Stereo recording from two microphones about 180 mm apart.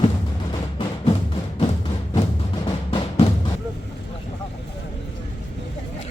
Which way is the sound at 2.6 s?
25° left (ahead or behind).